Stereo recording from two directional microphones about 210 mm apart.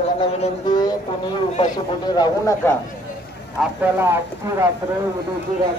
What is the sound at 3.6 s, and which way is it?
Speech, 10° right (ahead or behind).